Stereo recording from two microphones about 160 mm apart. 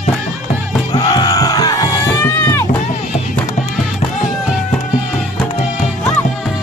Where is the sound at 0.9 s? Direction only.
25° left (ahead or behind).